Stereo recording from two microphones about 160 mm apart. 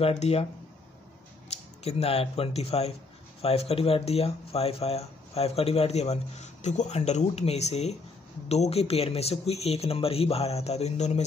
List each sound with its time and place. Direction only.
0.0 s speech: 40° left (ahead or behind)
1.9 s speech: 40° left (ahead or behind)